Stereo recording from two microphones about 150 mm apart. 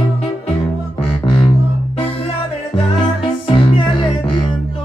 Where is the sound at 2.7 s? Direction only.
35° left (ahead or behind).